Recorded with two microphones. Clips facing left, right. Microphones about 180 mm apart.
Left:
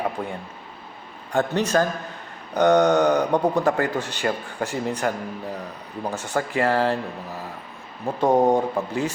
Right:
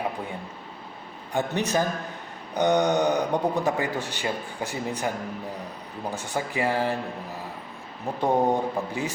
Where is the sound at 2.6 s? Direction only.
60° left (ahead or behind).